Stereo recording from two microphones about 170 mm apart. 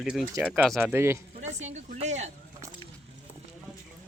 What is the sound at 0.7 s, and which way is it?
Speech, 10° right (ahead or behind).